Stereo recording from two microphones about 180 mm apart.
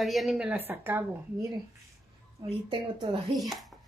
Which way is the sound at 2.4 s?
30° right (ahead or behind).